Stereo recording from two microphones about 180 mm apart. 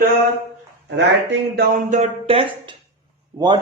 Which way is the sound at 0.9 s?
70° right (ahead or behind).